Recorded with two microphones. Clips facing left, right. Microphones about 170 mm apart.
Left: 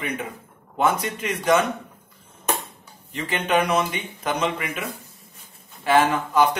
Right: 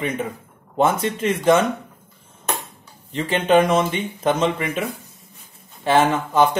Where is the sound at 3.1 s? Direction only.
25° right (ahead or behind).